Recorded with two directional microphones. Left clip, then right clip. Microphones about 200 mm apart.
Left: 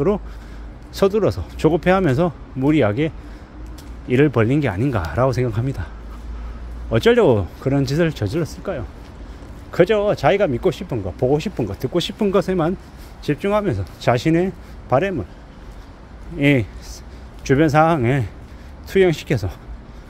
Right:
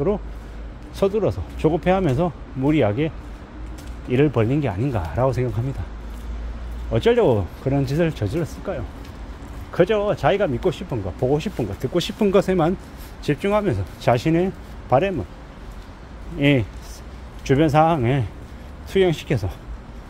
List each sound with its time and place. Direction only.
0.9 s speech: 25° left (ahead or behind)
4.1 s speech: 25° left (ahead or behind)
6.9 s speech: 25° left (ahead or behind)
16.3 s speech: 15° left (ahead or behind)